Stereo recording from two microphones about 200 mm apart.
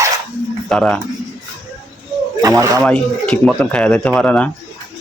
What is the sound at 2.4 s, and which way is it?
Speech, 15° right (ahead or behind).